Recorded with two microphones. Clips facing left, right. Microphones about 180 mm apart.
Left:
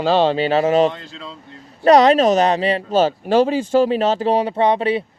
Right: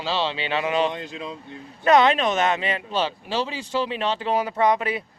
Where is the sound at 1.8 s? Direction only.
40° left (ahead or behind).